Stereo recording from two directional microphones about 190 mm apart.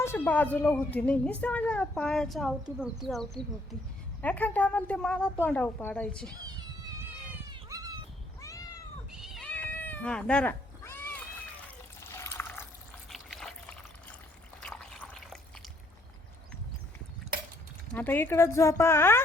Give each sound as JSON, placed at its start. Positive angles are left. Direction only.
{"t": 0.0, "sound": "a woman's voice", "side_deg": 10}
{"t": 7.5, "sound": "cat", "side_deg": -20}
{"t": 8.4, "sound": "cat", "side_deg": 15}
{"t": 9.1, "sound": "cat", "side_deg": 0}
{"t": 12.2, "sound": "water", "side_deg": 15}
{"t": 13.1, "sound": "water", "side_deg": 0}
{"t": 14.6, "sound": "liquid", "side_deg": 5}
{"t": 17.9, "sound": "speech", "side_deg": 10}